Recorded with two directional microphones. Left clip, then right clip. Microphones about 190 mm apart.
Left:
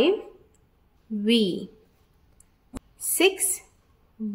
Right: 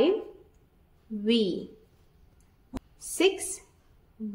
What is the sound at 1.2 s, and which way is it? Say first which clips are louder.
Speech: left 3 dB; 15° left (ahead or behind).